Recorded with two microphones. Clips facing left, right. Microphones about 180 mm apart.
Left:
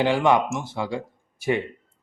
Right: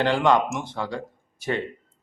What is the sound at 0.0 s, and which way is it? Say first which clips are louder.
Speech: left 1 dB; 10° left (ahead or behind).